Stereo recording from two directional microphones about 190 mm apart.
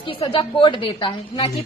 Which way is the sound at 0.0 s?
25° left (ahead or behind).